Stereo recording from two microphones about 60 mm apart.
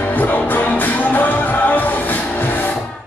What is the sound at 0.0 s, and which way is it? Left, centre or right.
Music, left.